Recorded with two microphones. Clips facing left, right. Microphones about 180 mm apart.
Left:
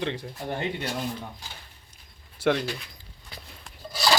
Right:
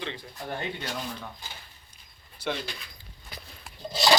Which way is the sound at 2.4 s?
90° left.